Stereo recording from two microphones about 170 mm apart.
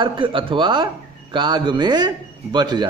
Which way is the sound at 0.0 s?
30° right (ahead or behind).